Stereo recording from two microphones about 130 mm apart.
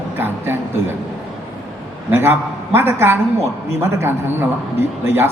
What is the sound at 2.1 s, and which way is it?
A man's voice, 20° right (ahead or behind).